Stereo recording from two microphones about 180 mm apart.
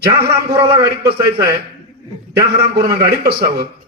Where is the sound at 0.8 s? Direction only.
60° right (ahead or behind).